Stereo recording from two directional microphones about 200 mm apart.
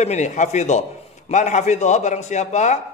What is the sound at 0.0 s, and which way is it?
A man's voice, 35° left (ahead or behind).